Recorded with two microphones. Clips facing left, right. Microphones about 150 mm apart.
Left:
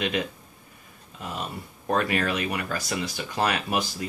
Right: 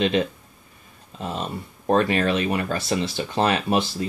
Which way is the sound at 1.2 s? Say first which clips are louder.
Right 5 dB; 30° right (ahead or behind).